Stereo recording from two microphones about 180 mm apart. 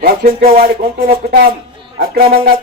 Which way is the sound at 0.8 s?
60° right (ahead or behind).